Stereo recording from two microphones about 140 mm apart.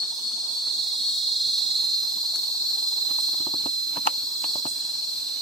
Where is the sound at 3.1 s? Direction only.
50° left (ahead or behind).